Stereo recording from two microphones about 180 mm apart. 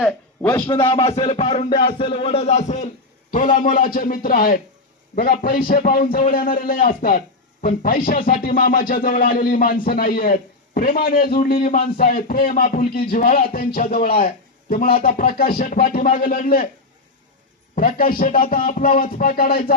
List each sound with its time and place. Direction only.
0.0 s speech: 5° left (ahead or behind)
0.7 s music: 30° left (ahead or behind)
3.3 s a man's voice: 50° left (ahead or behind)
17.7 s a man's voice: 55° left (ahead or behind)